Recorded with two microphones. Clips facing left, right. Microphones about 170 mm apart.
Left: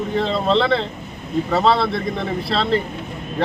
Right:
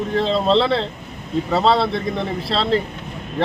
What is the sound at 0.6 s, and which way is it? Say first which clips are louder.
Speech: even; centre (ahead or behind).